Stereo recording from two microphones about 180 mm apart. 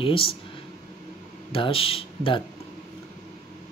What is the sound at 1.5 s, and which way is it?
Speech, 30° left (ahead or behind).